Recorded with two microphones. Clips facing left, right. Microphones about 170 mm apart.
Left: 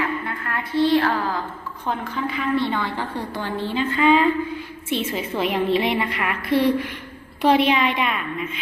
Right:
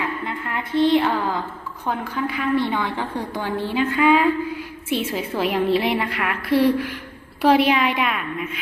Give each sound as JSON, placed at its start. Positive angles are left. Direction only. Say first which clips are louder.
{"t": 0.3, "sound": "a woman's voice", "louder": "right 1 dB", "side_deg": -20}
{"t": 1.9, "sound": "a woman's voice", "louder": "right 1 dB", "side_deg": -5}